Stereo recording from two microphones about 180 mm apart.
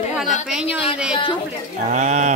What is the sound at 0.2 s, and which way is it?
Speech, centre (ahead or behind).